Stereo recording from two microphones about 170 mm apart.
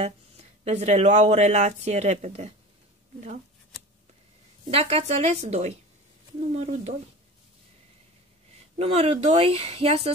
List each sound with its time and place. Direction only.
0.0 s speech: 40° right (ahead or behind)
4.6 s speech: 35° right (ahead or behind)
8.7 s speech: 35° right (ahead or behind)